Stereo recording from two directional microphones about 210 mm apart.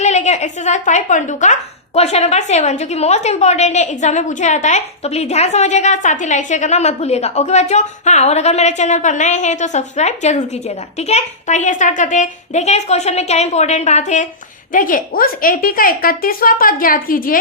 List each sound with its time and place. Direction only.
0.0 s a woman's voice: 35° left (ahead or behind)